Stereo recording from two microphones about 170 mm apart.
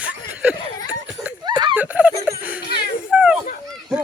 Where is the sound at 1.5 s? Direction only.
25° right (ahead or behind).